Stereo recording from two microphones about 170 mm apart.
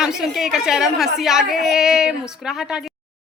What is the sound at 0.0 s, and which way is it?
Speech, 5° right (ahead or behind).